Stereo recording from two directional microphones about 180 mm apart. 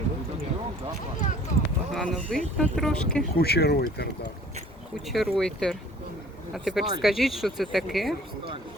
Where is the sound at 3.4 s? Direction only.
60° left (ahead or behind).